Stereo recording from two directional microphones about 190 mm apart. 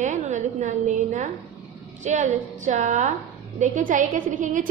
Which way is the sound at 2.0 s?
40° right (ahead or behind).